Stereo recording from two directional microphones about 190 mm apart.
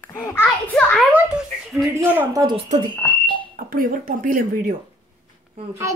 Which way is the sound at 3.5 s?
45° right (ahead or behind).